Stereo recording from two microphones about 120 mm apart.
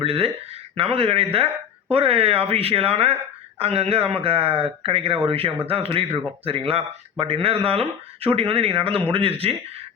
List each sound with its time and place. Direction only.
0.0 s speech: 55° right (ahead or behind)